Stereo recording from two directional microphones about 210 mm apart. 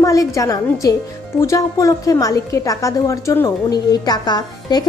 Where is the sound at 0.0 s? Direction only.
15° left (ahead or behind).